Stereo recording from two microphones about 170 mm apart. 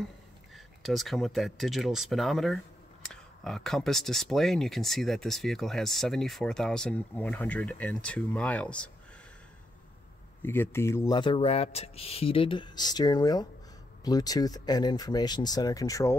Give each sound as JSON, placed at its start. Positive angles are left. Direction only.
{"t": 0.8, "sound": "speech", "side_deg": 0}
{"t": 10.4, "sound": "speech", "side_deg": 15}
{"t": 11.1, "sound": "speech", "side_deg": 30}